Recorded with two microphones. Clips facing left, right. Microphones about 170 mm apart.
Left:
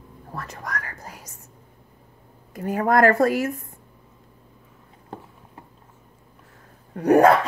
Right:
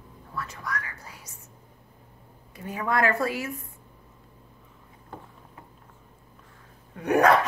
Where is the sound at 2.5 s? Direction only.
45° left (ahead or behind).